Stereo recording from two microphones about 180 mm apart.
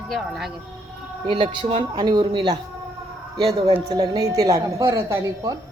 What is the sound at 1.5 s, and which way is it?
Speech, 30° right (ahead or behind).